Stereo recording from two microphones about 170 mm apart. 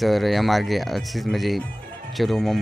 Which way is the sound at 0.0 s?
Centre (ahead or behind).